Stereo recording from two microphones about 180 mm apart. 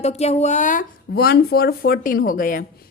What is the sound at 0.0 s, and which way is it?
A woman's voice, 35° left (ahead or behind).